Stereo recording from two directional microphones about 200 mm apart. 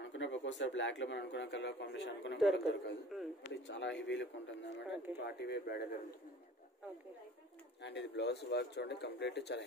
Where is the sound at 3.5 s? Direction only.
60° left (ahead or behind).